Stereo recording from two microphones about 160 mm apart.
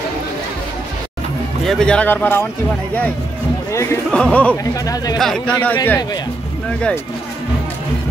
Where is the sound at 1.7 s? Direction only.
5° left (ahead or behind).